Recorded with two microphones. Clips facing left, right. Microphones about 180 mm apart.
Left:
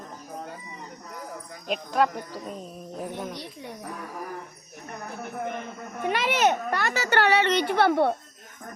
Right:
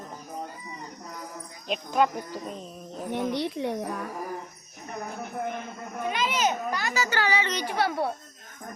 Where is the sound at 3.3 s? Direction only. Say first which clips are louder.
Right 10 dB; 75° right (ahead or behind).